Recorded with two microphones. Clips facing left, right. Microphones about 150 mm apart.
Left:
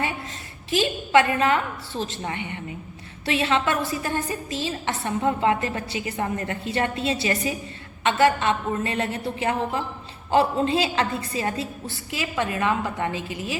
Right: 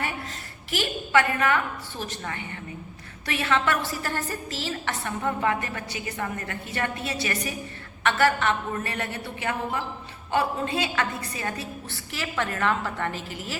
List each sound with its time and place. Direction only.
0.7 s a woman's voice: 25° left (ahead or behind)